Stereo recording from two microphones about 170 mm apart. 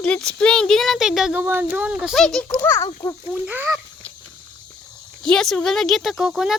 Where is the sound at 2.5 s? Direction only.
15° left (ahead or behind).